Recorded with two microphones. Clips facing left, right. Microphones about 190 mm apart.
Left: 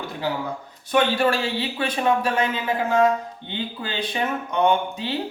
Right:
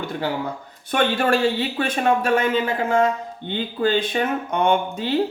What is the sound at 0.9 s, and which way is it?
Speech, 55° right (ahead or behind).